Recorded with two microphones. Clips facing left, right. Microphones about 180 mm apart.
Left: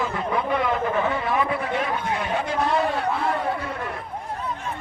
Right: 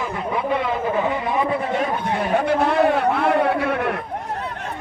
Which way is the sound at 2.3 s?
65° right (ahead or behind).